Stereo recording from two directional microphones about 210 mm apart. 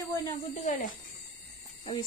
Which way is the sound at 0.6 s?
40° left (ahead or behind).